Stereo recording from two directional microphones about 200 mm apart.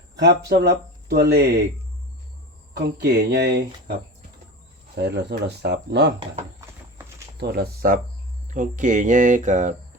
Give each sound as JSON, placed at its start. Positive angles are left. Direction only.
{"t": 0.2, "sound": "speech", "side_deg": -55}
{"t": 2.7, "sound": "speech", "side_deg": -55}
{"t": 4.9, "sound": "speech", "side_deg": -55}
{"t": 7.3, "sound": "speech", "side_deg": -55}